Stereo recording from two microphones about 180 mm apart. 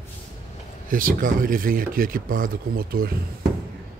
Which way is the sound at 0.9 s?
50° right (ahead or behind).